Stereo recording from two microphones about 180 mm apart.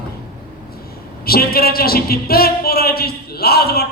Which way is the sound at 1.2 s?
55° left (ahead or behind).